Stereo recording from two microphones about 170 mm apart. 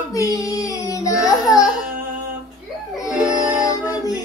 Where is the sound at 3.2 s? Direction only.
25° right (ahead or behind).